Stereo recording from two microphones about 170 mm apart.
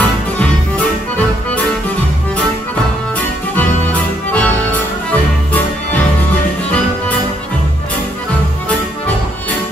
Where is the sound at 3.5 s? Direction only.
10° left (ahead or behind).